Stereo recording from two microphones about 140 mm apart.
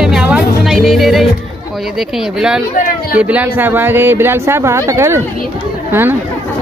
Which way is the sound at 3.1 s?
10° right (ahead or behind).